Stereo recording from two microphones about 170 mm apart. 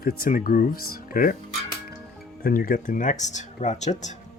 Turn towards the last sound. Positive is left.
turn(degrees=45)  # may be behind; listen again after turning